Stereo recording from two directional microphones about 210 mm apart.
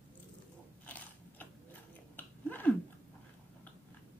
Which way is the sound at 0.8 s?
10° left (ahead or behind).